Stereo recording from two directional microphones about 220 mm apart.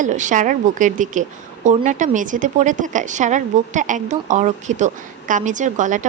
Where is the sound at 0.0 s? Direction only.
35° right (ahead or behind).